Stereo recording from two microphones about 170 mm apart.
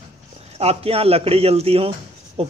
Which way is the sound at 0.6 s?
35° right (ahead or behind).